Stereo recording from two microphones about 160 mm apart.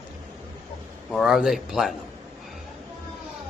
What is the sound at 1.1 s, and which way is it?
Speech, 5° right (ahead or behind).